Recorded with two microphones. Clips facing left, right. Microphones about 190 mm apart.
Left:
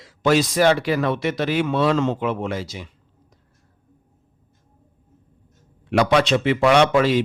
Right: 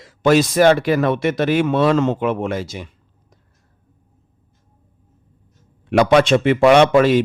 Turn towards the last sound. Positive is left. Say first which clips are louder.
# right 4 dB
turn(degrees=-50)  # may be behind; listen again after turning